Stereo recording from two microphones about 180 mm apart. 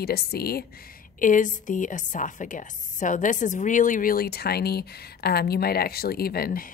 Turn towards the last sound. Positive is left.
turn(degrees=55)  # may be behind; listen again after turning